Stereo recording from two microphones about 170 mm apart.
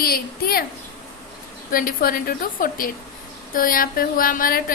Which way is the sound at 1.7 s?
55° left (ahead or behind).